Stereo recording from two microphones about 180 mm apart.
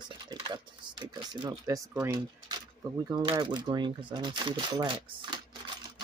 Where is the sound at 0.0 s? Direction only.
25° right (ahead or behind).